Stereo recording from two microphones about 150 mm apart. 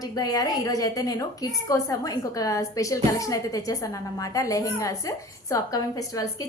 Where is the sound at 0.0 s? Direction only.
25° left (ahead or behind).